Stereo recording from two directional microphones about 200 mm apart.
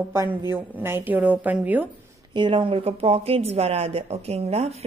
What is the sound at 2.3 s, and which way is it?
A woman's voice, 25° right (ahead or behind).